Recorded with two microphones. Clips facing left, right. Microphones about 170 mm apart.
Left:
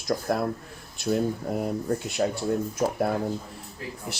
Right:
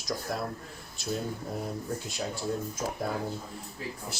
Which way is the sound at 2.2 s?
65° left (ahead or behind).